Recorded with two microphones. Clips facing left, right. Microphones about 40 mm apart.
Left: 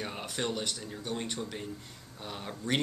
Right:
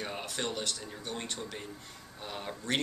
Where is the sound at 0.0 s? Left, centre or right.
Centre.